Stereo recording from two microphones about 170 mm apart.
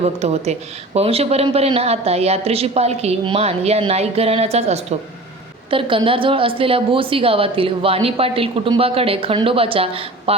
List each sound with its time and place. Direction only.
0.0 s a woman's voice: 40° right (ahead or behind)